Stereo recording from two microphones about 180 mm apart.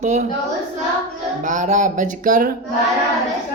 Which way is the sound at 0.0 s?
40° right (ahead or behind).